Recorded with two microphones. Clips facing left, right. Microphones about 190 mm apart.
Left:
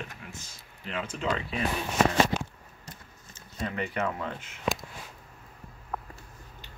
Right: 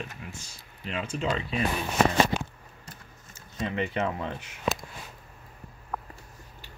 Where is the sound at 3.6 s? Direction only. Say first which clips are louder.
Right 2 dB; 25° right (ahead or behind).